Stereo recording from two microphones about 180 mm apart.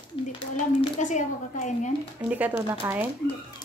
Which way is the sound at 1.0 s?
40° left (ahead or behind).